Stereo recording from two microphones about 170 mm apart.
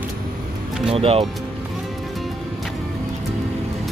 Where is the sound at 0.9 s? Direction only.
35° right (ahead or behind).